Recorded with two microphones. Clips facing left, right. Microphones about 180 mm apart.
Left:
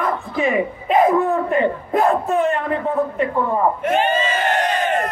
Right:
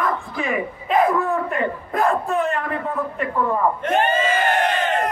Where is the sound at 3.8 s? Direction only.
10° left (ahead or behind).